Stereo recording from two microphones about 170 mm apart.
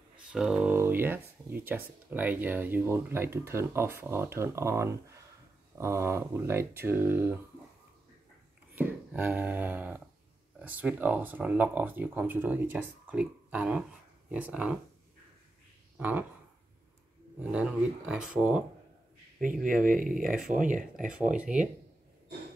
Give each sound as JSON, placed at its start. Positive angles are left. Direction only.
{"t": 0.3, "sound": "speech", "side_deg": -5}
{"t": 8.7, "sound": "a sound", "side_deg": -10}
{"t": 10.6, "sound": "speech", "side_deg": -10}
{"t": 16.0, "sound": "speech", "side_deg": -10}
{"t": 17.4, "sound": "speech", "side_deg": -5}
{"t": 19.4, "sound": "speech", "side_deg": -55}
{"t": 21.4, "sound": "speech", "side_deg": -5}